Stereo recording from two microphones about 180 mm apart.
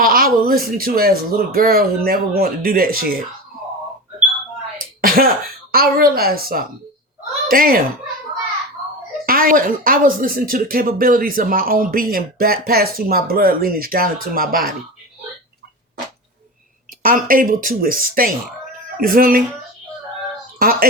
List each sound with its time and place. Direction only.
0.0 s speech: 55° right (ahead or behind)
4.9 s throat clearing: 55° right (ahead or behind)
5.7 s speech: 55° right (ahead or behind)
9.2 s speech: 55° right (ahead or behind)
17.0 s speech: 50° right (ahead or behind)
20.6 s a sound: 55° right (ahead or behind)